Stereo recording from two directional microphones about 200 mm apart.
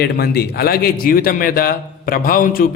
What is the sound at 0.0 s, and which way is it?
A man's voice, 50° left (ahead or behind).